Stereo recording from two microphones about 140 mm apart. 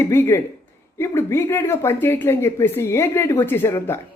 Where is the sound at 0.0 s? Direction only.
20° left (ahead or behind).